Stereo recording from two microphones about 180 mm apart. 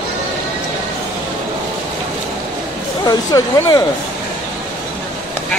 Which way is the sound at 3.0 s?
20° left (ahead or behind).